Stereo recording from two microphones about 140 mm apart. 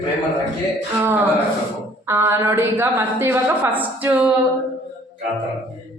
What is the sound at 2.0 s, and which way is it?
A woman's voice, 20° right (ahead or behind).